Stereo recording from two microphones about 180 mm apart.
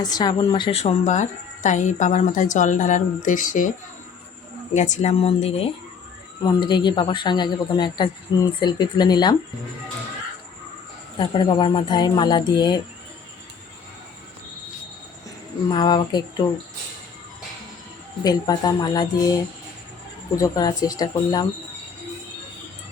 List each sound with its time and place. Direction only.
0.0 s speech: 20° left (ahead or behind); by 3.7 s 45° left (ahead or behind)
4.7 s a woman's voice: 40° left (ahead or behind); by 9.3 s 25° left (ahead or behind)
11.2 s a woman's voice: 25° left (ahead or behind)
15.7 s a woman's voice: 25° left (ahead or behind)
18.2 s a woman's voice: 20° left (ahead or behind)